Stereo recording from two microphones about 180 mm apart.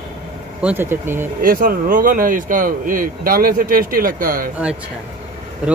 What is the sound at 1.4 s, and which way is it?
A man's voice, 55° right (ahead or behind).